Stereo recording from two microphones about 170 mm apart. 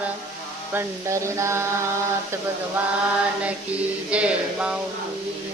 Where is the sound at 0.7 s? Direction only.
15° right (ahead or behind).